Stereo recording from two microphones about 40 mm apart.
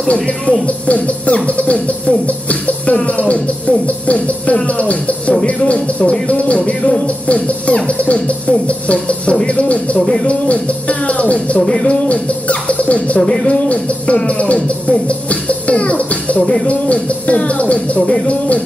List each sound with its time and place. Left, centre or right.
0.7 s music: left
5.6 s speech: left
6.2 s music: left
9.9 s speech: centre
10.2 s music: left